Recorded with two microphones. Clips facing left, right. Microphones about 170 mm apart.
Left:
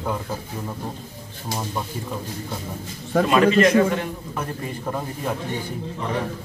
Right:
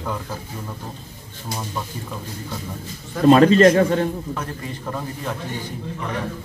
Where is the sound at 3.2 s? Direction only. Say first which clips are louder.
Right 6 dB; 35° right (ahead or behind).